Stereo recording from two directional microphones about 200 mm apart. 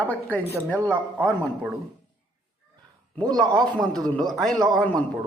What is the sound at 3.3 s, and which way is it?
Speech, 20° right (ahead or behind).